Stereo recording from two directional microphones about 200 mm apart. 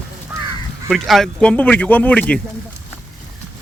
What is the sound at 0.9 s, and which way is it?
Speech, centre (ahead or behind).